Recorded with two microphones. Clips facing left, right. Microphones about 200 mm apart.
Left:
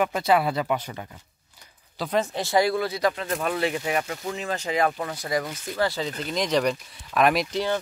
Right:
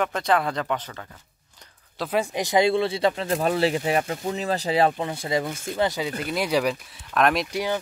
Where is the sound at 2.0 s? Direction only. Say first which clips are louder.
Right 1 dB; 10° right (ahead or behind).